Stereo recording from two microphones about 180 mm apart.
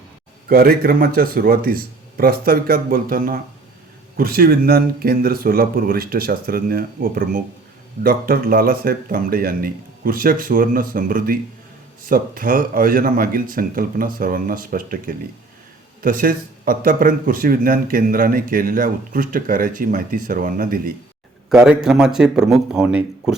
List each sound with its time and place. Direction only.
0.4 s speech: 55° right (ahead or behind)
21.5 s a man's voice: 5° right (ahead or behind)